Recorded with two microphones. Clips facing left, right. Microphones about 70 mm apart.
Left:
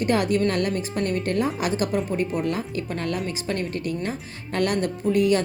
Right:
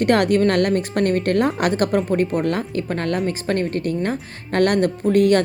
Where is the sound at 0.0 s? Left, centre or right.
Right.